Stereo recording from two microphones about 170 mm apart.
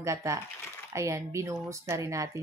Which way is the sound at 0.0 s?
20° right (ahead or behind).